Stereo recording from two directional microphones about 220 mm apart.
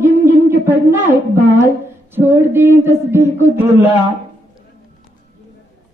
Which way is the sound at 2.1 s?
10° right (ahead or behind).